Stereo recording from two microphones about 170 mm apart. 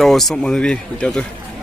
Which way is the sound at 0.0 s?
Centre (ahead or behind).